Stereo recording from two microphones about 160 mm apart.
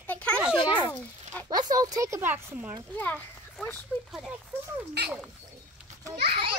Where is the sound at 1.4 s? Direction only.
25° right (ahead or behind).